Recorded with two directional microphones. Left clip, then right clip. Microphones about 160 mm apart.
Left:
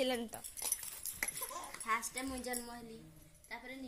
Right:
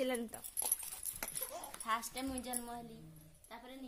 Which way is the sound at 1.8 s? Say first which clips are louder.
Left 1 dB; 60° right (ahead or behind).